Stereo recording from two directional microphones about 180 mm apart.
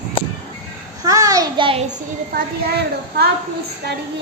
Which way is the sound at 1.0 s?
20° right (ahead or behind).